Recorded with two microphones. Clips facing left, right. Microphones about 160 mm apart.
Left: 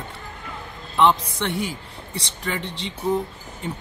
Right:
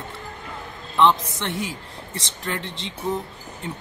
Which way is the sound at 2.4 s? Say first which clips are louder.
Left 1 dB; centre (ahead or behind).